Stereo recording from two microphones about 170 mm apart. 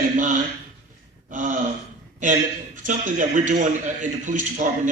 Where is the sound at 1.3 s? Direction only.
50° right (ahead or behind).